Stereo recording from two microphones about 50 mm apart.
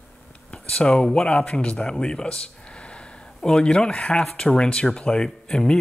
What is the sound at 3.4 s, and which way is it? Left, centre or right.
Speech, centre.